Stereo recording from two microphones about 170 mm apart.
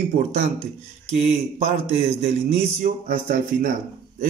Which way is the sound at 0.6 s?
40° right (ahead or behind).